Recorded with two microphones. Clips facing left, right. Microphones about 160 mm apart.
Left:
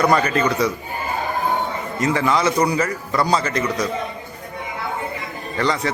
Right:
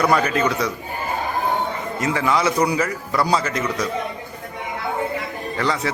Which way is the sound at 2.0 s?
5° right (ahead or behind).